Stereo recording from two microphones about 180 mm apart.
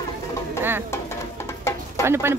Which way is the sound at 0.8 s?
15° left (ahead or behind).